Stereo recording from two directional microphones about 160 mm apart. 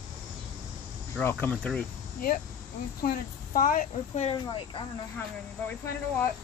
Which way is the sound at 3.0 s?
60° left (ahead or behind).